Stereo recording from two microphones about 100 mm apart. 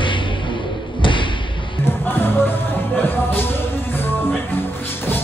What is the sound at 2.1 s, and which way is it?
Music, 20° left (ahead or behind).